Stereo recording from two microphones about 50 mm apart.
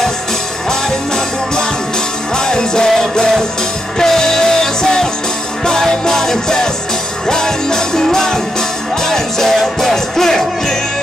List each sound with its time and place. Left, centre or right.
2.3 s music: centre